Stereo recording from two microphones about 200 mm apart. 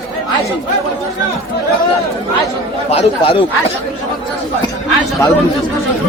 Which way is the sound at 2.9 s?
30° left (ahead or behind).